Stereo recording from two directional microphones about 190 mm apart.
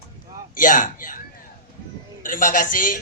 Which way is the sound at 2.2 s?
45° left (ahead or behind).